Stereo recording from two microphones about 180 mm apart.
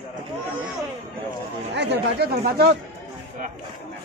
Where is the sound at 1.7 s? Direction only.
70° right (ahead or behind).